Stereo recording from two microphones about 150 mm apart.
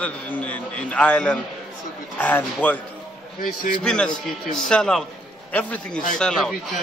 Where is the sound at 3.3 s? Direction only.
65° left (ahead or behind).